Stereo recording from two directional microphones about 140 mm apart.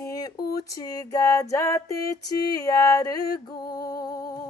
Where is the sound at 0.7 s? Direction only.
25° left (ahead or behind).